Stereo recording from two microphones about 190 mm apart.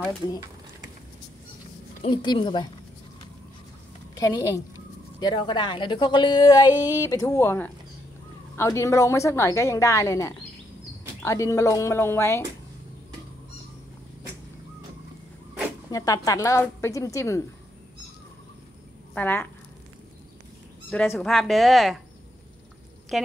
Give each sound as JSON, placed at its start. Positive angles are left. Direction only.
{"t": 2.0, "sound": "speech", "side_deg": 25}
{"t": 4.1, "sound": "a woman's voice", "side_deg": 20}
{"t": 15.9, "sound": "a woman's voice", "side_deg": 20}
{"t": 19.1, "sound": "a woman's voice", "side_deg": 10}
{"t": 20.9, "sound": "speech", "side_deg": 5}
{"t": 23.1, "sound": "speech", "side_deg": 0}